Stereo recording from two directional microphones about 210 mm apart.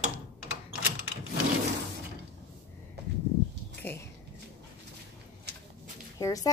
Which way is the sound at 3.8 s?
10° left (ahead or behind).